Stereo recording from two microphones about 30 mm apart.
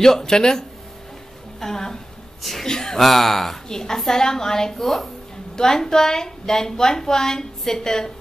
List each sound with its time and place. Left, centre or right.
0.0 s a woman's voice: centre
3.0 s speech: centre
3.6 s a woman's voice: centre
4.8 s a woman's voice: centre
5.6 s a woman's voice: centre